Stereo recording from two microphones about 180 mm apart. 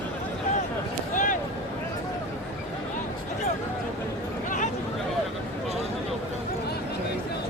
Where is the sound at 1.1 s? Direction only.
45° left (ahead or behind).